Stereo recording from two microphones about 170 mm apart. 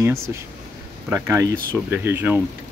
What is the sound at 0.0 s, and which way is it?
Speech, 15° right (ahead or behind).